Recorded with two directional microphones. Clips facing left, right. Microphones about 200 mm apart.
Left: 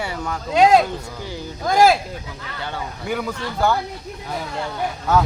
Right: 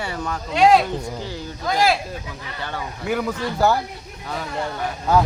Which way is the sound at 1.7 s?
45° left (ahead or behind).